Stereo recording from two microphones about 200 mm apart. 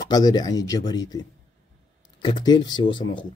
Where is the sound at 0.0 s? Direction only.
20° left (ahead or behind).